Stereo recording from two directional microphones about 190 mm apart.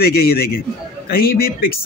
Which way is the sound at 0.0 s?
55° left (ahead or behind).